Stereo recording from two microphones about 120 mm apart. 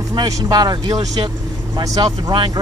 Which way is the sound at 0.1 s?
35° right (ahead or behind).